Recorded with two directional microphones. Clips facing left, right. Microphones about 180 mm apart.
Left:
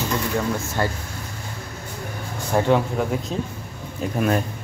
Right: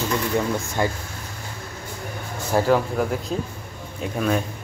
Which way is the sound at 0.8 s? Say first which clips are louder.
Right 1 dB; 15° right (ahead or behind).